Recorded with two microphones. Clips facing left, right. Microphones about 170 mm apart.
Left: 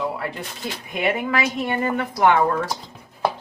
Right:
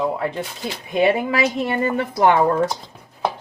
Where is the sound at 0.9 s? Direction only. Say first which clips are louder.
Right 5 dB; 30° right (ahead or behind).